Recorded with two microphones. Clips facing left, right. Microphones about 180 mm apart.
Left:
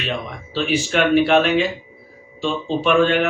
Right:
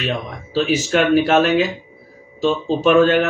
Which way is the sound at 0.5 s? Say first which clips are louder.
Right 3 dB; 40° right (ahead or behind).